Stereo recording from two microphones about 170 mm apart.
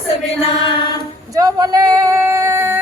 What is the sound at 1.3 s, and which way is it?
Speech, 20° right (ahead or behind).